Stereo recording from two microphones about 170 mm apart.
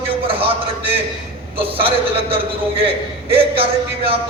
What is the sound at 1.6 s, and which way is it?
A man's voice, 35° right (ahead or behind).